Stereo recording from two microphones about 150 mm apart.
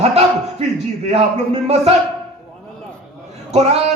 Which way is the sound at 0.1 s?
45° right (ahead or behind).